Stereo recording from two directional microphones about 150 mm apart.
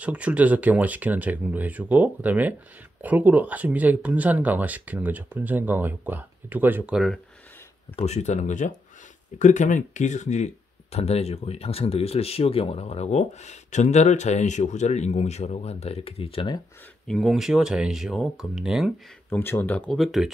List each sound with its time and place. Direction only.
0.0 s speech: 10° right (ahead or behind)
7.9 s speech: 45° left (ahead or behind)
17.1 s speech: centre (ahead or behind)
19.2 s speech: 15° left (ahead or behind); by 20.3 s centre (ahead or behind)